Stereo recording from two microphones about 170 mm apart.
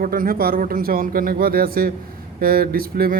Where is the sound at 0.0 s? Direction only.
55° right (ahead or behind).